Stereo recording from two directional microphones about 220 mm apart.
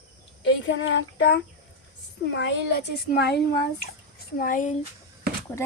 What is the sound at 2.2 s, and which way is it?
A child's voice, 55° left (ahead or behind).